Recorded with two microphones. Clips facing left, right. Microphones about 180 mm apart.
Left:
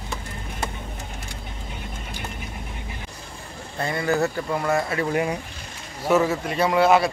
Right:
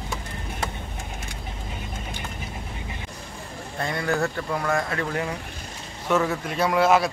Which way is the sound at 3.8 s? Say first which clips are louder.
Left 2 dB; centre (ahead or behind).